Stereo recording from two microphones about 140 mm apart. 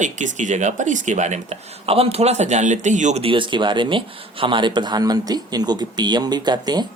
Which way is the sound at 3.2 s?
35° right (ahead or behind).